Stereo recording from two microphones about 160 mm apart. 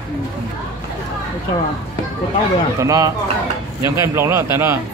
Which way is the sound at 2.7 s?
20° right (ahead or behind).